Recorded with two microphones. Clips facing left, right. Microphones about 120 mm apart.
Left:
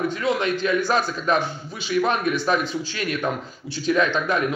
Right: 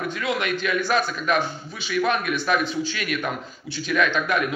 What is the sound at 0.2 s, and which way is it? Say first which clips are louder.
A man's voice: left 1 dB; 30° left (ahead or behind).